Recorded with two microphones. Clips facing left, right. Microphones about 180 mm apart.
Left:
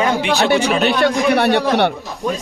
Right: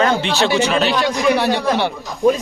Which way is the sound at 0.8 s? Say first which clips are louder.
Left 2 dB; 60° left (ahead or behind).